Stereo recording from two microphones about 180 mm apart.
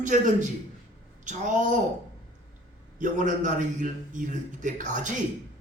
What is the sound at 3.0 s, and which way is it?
A man's voice, 45° right (ahead or behind).